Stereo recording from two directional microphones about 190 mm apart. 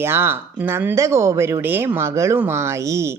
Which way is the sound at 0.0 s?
10° right (ahead or behind).